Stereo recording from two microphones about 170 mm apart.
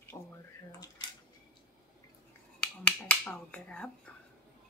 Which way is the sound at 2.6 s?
10° left (ahead or behind).